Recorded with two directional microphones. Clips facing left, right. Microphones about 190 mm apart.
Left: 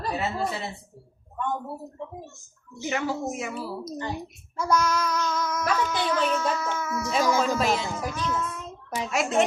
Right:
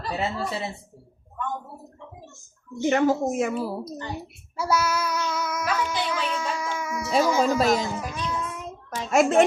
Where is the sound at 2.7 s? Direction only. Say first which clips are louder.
Right 8 dB; 45° right (ahead or behind).